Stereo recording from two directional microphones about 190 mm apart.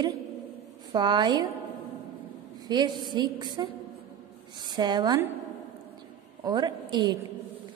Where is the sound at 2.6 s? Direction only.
25° right (ahead or behind).